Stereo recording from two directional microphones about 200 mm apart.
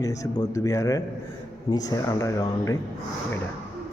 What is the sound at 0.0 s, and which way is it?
Speech, 15° left (ahead or behind).